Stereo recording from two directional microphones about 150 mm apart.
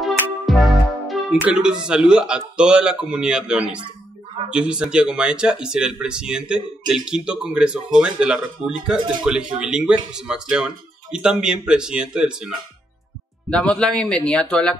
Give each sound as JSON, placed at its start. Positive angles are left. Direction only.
{"t": 0.0, "sound": "music", "side_deg": 0}
{"t": 1.4, "sound": "speech", "side_deg": -5}
{"t": 13.5, "sound": "a man's voice", "side_deg": 5}